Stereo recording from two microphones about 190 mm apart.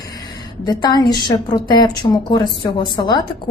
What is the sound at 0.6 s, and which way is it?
A woman's voice, 20° left (ahead or behind).